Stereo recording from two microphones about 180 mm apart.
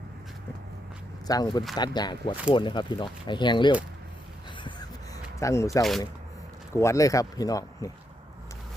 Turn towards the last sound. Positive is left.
turn(degrees=20)  # may be behind; listen again after turning